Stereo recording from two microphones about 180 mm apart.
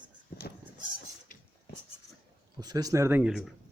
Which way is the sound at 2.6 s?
20° right (ahead or behind).